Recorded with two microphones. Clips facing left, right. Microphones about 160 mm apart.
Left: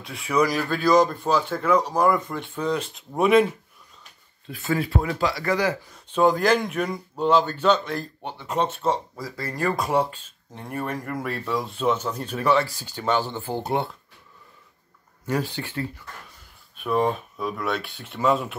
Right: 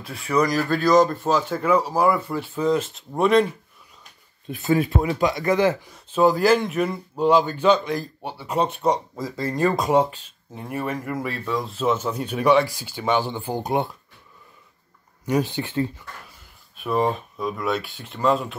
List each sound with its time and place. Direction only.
0.0 s speech: centre (ahead or behind)
4.5 s speech: 20° right (ahead or behind)
6.1 s a man's voice: 5° right (ahead or behind)
10.5 s a man's voice: 5° right (ahead or behind)
15.2 s speech: 15° right (ahead or behind)
16.7 s speech: centre (ahead or behind)